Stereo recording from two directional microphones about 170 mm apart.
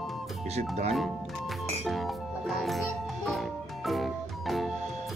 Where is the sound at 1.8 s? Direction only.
Centre (ahead or behind).